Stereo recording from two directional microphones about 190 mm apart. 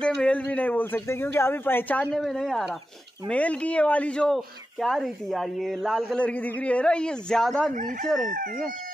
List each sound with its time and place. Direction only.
0.0 s speech: 5° left (ahead or behind)
7.7 s speech: 45° right (ahead or behind)